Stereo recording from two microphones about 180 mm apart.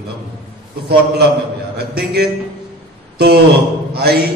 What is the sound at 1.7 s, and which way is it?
Speech, 60° right (ahead or behind).